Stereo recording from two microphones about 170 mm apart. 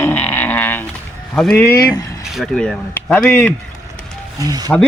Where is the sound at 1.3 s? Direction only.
5° left (ahead or behind); by 2.2 s 20° left (ahead or behind).